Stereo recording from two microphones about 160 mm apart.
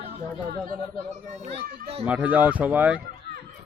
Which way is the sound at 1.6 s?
65° right (ahead or behind).